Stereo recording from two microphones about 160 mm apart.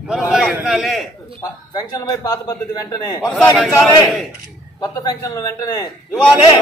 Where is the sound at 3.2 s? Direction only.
Centre (ahead or behind).